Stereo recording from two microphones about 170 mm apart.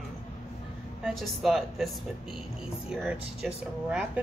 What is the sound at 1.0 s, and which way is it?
Speech, centre (ahead or behind).